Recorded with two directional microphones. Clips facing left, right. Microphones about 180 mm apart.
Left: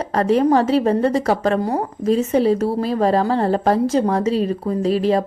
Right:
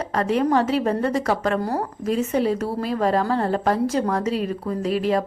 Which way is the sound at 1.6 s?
20° left (ahead or behind).